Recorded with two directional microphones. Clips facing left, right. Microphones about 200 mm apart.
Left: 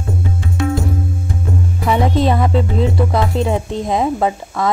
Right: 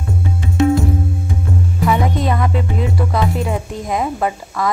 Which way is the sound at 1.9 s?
30° left (ahead or behind).